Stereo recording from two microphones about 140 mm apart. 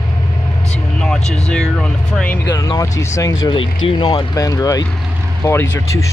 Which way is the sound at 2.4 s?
20° left (ahead or behind).